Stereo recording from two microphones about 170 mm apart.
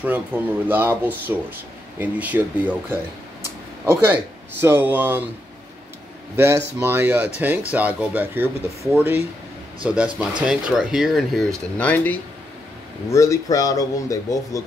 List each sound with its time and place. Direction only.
0.3 s speech: 10° right (ahead or behind)
6.3 s speech: 15° right (ahead or behind); by 14.6 s 20° left (ahead or behind)